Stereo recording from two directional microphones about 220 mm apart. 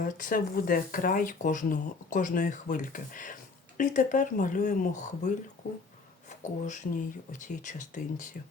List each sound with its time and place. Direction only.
0.0 s speech: 40° left (ahead or behind)
6.4 s speech: 35° left (ahead or behind)